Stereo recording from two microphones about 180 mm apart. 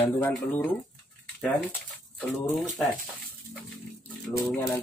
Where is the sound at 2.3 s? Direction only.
Centre (ahead or behind).